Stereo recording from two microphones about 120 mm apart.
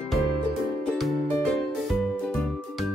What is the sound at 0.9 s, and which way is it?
Music, 5° left (ahead or behind).